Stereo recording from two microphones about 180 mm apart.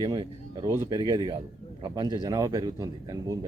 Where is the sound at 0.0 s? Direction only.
20° right (ahead or behind).